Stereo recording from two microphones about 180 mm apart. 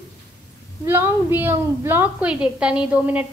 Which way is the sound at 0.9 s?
15° right (ahead or behind).